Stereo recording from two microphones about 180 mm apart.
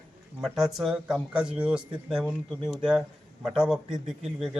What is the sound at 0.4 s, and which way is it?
A man's voice, centre (ahead or behind).